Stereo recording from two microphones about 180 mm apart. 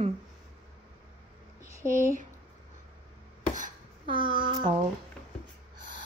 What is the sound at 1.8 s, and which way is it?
Speech, 45° right (ahead or behind).